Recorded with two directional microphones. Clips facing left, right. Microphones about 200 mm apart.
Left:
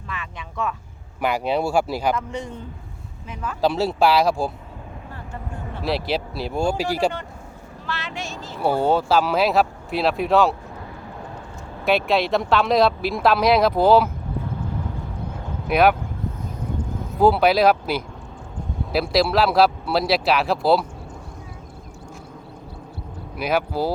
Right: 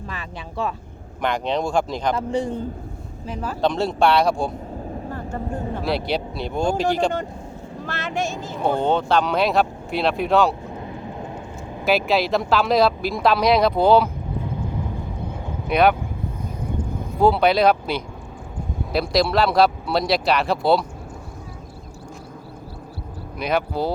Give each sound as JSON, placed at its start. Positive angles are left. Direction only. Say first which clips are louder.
{"t": 0.1, "sound": "speech", "louder": "left 3 dB", "side_deg": -35}
{"t": 1.2, "sound": "speech", "louder": "left 1 dB", "side_deg": 5}
{"t": 2.1, "sound": "speech", "louder": "right 6 dB", "side_deg": -30}
{"t": 3.6, "sound": "speech", "louder": "left 1 dB", "side_deg": 5}
{"t": 5.0, "sound": "vehicle", "louder": "right 6 dB", "side_deg": -40}
{"t": 5.8, "sound": "speech", "louder": "left 2 dB", "side_deg": 0}
{"t": 7.9, "sound": "speech", "louder": "right 5 dB", "side_deg": -50}
{"t": 8.6, "sound": "speech", "louder": "left 1 dB", "side_deg": 5}
{"t": 10.8, "sound": "vehicle", "louder": "right 4 dB", "side_deg": -20}
{"t": 11.9, "sound": "speech", "louder": "even", "side_deg": 0}
{"t": 14.4, "sound": "vehicle", "louder": "right 2 dB", "side_deg": -15}
{"t": 15.6, "sound": "speech", "louder": "even", "side_deg": 5}
{"t": 17.2, "sound": "speech", "louder": "even", "side_deg": 5}
{"t": 23.4, "sound": "speech", "louder": "even", "side_deg": 5}